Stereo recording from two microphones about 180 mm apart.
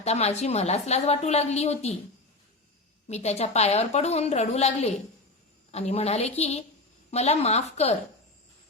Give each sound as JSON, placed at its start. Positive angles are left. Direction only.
{"t": 0.0, "sound": "a woman's voice", "side_deg": 35}
{"t": 3.1, "sound": "a woman's voice", "side_deg": 35}